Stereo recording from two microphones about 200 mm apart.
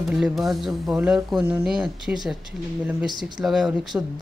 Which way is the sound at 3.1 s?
20° right (ahead or behind).